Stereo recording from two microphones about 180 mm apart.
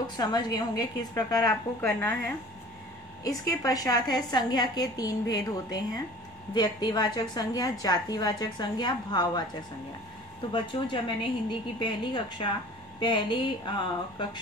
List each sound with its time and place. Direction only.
0.0 s a woman's voice: 25° left (ahead or behind)
1.8 s a woman's voice: 10° left (ahead or behind)
10.5 s a woman's voice: 25° left (ahead or behind)